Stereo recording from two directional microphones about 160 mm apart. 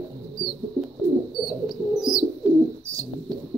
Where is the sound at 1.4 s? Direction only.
Centre (ahead or behind).